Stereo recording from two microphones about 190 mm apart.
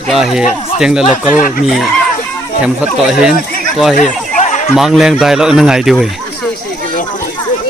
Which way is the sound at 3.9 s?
40° left (ahead or behind).